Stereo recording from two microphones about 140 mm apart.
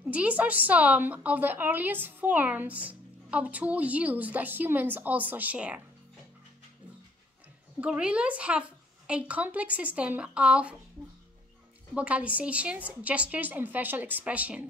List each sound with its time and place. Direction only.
0.1 s a woman's voice: 10° right (ahead or behind)
7.8 s a woman's voice: 10° right (ahead or behind)
11.9 s a woman's voice: 10° right (ahead or behind)